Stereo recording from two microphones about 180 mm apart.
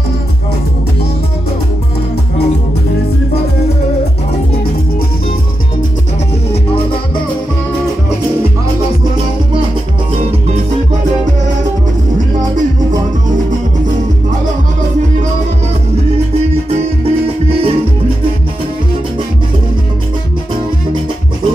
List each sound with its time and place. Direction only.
17.0 s music: 30° right (ahead or behind)